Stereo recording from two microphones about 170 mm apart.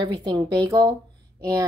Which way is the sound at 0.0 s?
25° right (ahead or behind).